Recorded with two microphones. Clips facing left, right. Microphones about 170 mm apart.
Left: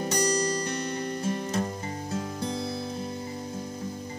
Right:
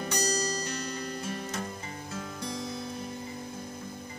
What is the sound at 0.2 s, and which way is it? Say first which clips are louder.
Music: left 5 dB; 55° left (ahead or behind).